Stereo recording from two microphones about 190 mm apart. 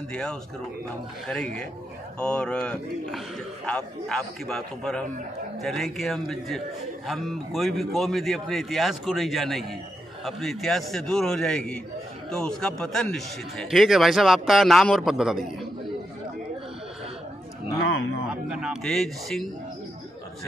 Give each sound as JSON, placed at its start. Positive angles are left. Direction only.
{"t": 0.1, "sound": "a man's voice", "side_deg": 5}
{"t": 18.3, "sound": "a man's voice", "side_deg": -5}